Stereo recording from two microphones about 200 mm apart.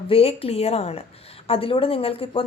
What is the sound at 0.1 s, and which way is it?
A woman's voice, 30° left (ahead or behind).